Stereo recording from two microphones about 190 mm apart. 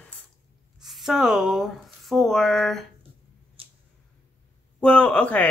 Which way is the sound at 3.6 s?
30° right (ahead or behind).